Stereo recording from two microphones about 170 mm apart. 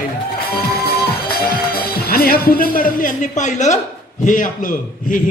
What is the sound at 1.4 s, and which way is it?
A man's voice, 60° left (ahead or behind).